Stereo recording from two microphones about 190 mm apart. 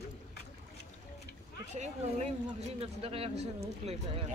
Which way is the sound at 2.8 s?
30° right (ahead or behind).